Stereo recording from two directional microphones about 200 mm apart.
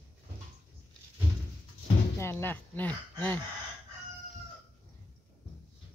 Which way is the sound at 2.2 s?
10° left (ahead or behind).